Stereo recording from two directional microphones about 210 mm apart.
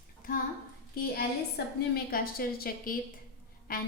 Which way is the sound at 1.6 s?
50° left (ahead or behind).